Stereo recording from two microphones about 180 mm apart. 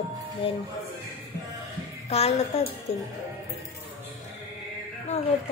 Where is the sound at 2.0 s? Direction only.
35° left (ahead or behind).